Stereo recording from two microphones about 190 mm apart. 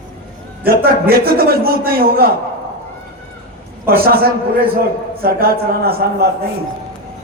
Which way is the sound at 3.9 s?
55° right (ahead or behind).